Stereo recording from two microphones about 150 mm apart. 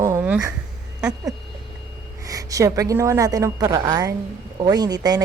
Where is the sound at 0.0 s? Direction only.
15° right (ahead or behind).